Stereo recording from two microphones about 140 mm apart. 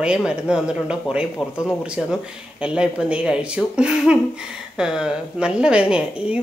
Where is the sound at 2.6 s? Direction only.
5° right (ahead or behind).